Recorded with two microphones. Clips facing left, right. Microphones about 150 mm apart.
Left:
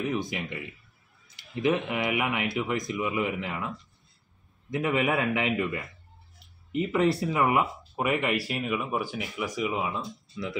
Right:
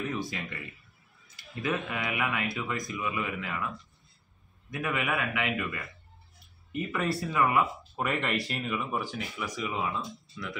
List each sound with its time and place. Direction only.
0.0 s speech: 15° left (ahead or behind)